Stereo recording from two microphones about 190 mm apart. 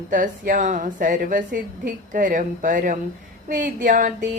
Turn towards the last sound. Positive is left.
turn(degrees=-45)  # may be behind; listen again after turning